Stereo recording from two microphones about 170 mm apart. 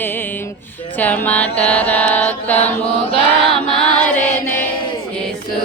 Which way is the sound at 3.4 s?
Centre (ahead or behind).